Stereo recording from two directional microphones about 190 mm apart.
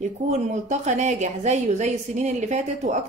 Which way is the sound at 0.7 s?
40° right (ahead or behind).